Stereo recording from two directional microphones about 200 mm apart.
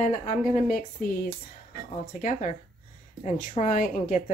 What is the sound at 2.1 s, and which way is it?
A woman's voice, 40° left (ahead or behind).